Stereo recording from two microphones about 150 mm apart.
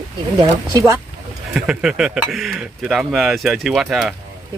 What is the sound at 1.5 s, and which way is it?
Speech, 5° right (ahead or behind).